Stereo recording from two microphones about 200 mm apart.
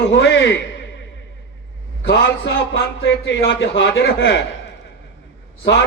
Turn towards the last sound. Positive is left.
turn(degrees=60)  # may be behind; listen again after turning